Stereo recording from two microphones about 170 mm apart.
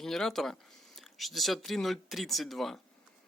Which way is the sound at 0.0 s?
Centre (ahead or behind).